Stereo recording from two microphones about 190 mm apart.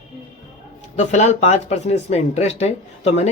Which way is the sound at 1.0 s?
35° left (ahead or behind).